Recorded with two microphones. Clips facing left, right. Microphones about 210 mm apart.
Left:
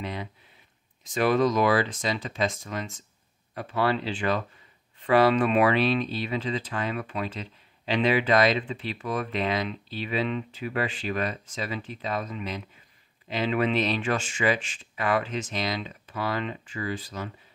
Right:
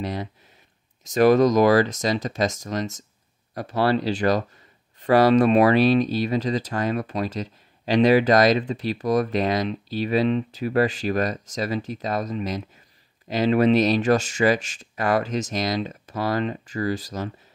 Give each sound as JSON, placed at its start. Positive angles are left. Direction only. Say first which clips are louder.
{"t": 0.0, "sound": "speech", "louder": "right 5 dB", "side_deg": -40}